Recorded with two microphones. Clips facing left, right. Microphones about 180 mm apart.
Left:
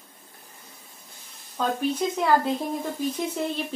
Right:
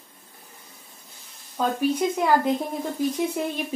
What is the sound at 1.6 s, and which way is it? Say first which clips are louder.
Speech: right 2 dB; 10° right (ahead or behind).